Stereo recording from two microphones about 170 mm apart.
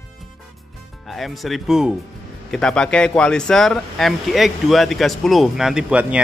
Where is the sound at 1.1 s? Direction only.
Centre (ahead or behind).